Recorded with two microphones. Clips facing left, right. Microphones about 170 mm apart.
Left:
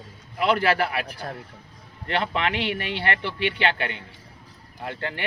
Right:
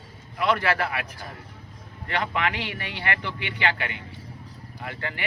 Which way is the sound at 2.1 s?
30° left (ahead or behind).